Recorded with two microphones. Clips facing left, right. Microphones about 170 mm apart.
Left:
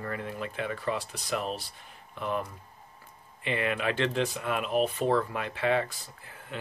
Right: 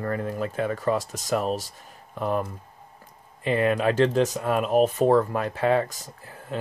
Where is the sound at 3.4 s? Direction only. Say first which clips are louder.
Right 7 dB; 40° right (ahead or behind).